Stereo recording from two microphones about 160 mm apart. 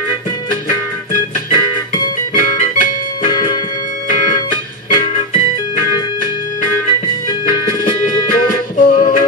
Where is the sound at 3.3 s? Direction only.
25° left (ahead or behind).